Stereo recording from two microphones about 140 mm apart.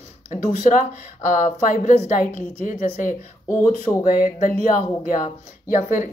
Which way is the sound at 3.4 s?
15° left (ahead or behind).